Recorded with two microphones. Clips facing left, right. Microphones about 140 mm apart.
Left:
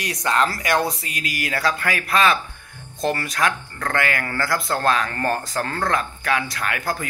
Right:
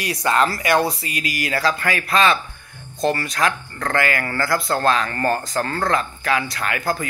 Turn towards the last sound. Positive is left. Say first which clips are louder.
# right 2 dB
turn(degrees=0)  # may be behind; listen again after turning